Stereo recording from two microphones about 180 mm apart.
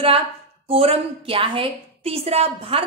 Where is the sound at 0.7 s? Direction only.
30° right (ahead or behind).